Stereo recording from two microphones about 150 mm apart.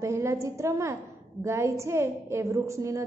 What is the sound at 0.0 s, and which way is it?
A woman's voice, 20° right (ahead or behind).